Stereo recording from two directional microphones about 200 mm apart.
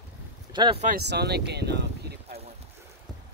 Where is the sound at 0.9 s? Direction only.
55° right (ahead or behind).